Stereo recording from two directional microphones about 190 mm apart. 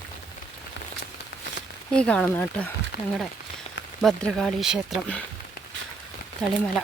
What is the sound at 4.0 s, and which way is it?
Speech, centre (ahead or behind).